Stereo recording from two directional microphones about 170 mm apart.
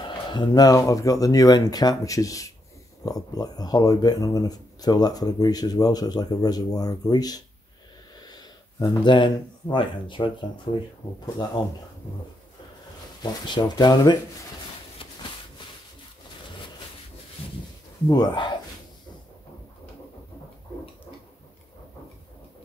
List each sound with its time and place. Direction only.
0.3 s speech: 25° left (ahead or behind)
13.2 s speech: 25° left (ahead or behind)
18.0 s speech: 25° left (ahead or behind)